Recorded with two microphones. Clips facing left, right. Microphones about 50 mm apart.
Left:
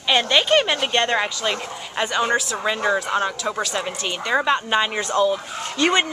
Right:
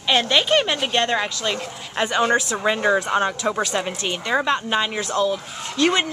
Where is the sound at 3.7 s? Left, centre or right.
Centre.